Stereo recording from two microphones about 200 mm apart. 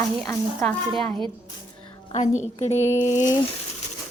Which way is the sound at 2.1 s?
35° left (ahead or behind).